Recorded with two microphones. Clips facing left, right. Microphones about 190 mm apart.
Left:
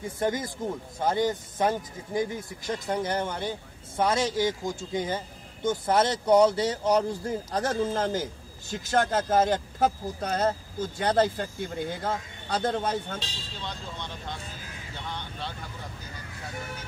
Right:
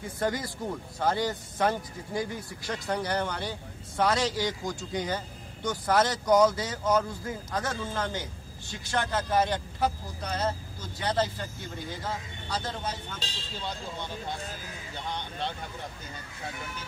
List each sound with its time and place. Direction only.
0.2 s a man's voice: 20° left (ahead or behind); by 13.2 s 55° left (ahead or behind)